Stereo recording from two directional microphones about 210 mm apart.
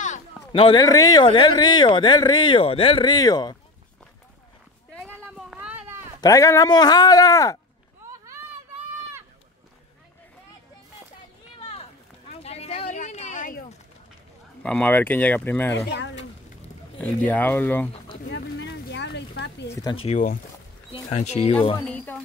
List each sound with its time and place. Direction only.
0.5 s speech: 25° left (ahead or behind)
5.2 s a sound: 5° right (ahead or behind)
6.2 s speech: 15° left (ahead or behind)
11.6 s a sound: 30° left (ahead or behind)
14.6 s speech: 5° left (ahead or behind)
15.9 s speech: 55° left (ahead or behind)
17.3 s speech: 10° left (ahead or behind)
18.3 s a sound: 55° left (ahead or behind)
19.7 s speech: 20° left (ahead or behind)
21.8 s speech: 5° left (ahead or behind)